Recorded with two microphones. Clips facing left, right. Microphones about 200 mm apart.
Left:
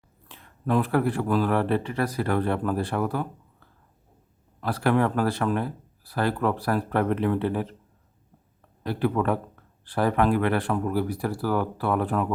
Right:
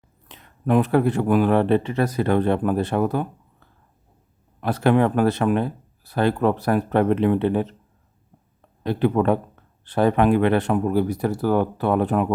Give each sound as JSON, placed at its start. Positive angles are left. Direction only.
{"t": 0.3, "sound": "speech", "side_deg": -20}
{"t": 4.6, "sound": "speech", "side_deg": -20}
{"t": 8.8, "sound": "speech", "side_deg": -20}